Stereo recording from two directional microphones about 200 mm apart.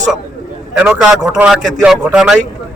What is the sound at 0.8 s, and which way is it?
A man's voice, 5° right (ahead or behind).